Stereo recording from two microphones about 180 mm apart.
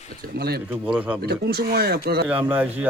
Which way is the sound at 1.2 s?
60° right (ahead or behind).